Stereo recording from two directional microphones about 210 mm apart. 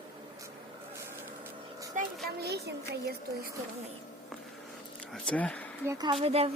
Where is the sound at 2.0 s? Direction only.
35° right (ahead or behind).